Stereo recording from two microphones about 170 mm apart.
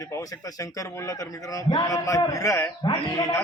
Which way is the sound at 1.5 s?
20° left (ahead or behind).